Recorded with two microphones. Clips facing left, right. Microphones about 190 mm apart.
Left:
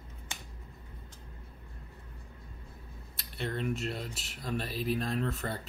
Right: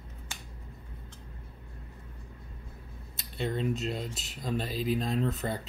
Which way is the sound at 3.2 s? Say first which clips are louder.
Right 3 dB; 20° right (ahead or behind).